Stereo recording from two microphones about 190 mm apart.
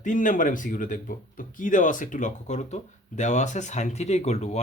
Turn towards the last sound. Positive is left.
turn(degrees=35)  # may be behind; listen again after turning